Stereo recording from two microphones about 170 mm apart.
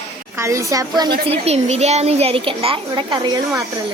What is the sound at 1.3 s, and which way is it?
Speech, 40° right (ahead or behind).